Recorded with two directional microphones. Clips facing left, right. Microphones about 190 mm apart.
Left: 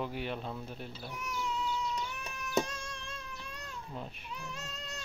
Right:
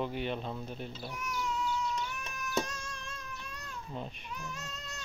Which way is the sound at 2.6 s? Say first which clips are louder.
Even; 30° left (ahead or behind).